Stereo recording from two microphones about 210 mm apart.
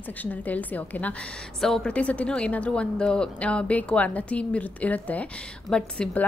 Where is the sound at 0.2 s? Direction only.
10° left (ahead or behind).